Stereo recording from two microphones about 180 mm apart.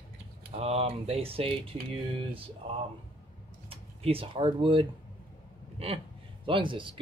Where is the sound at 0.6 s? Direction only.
35° right (ahead or behind).